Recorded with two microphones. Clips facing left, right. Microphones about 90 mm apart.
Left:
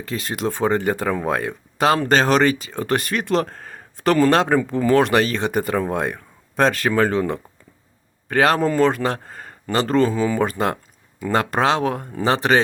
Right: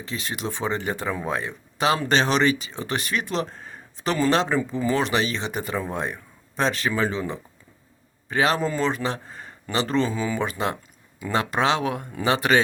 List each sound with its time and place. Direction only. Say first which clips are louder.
0.0 s speech: left 6 dB; 45° left (ahead or behind)